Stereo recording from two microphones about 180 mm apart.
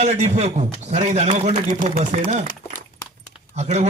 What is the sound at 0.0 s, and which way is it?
A man's voice, 40° right (ahead or behind).